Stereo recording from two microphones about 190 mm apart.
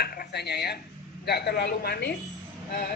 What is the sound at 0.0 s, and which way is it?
Dishes, 55° left (ahead or behind).